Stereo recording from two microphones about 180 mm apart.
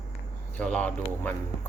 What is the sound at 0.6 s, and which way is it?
Speech, 5° left (ahead or behind).